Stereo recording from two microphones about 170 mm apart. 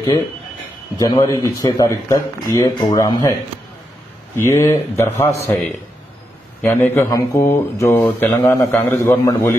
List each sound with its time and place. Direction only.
0.9 s a man's voice: 20° left (ahead or behind)
4.4 s speech: 15° left (ahead or behind)
6.6 s a man's voice: 10° left (ahead or behind)